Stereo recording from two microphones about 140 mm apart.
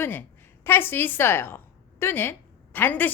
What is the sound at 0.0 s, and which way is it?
A woman's voice, 15° left (ahead or behind).